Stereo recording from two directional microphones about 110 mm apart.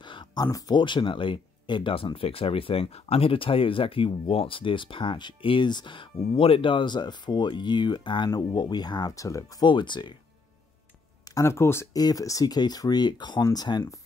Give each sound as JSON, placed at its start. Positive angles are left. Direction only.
{"t": 0.0, "sound": "a sound", "side_deg": 45}
{"t": 0.7, "sound": "speech", "side_deg": 45}
{"t": 9.7, "sound": "speech", "side_deg": 45}
{"t": 11.2, "sound": "speech", "side_deg": 30}
{"t": 11.9, "sound": "speech", "side_deg": 35}